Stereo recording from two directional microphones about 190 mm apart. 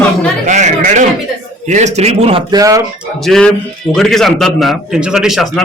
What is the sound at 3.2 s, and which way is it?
A man's voice, centre (ahead or behind).